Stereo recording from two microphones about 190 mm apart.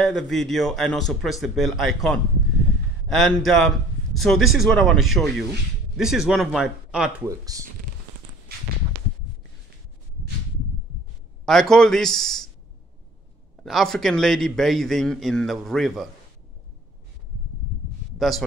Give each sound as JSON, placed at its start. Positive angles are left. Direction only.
{"t": 0.0, "sound": "a man's voice", "side_deg": 0}
{"t": 7.2, "sound": "speech", "side_deg": -20}
{"t": 11.4, "sound": "a man's voice", "side_deg": 0}
{"t": 13.7, "sound": "a man's voice", "side_deg": 0}
{"t": 18.1, "sound": "a sound", "side_deg": 0}